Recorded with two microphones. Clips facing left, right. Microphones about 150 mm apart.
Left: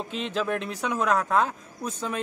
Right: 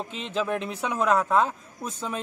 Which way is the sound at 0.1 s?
Centre (ahead or behind).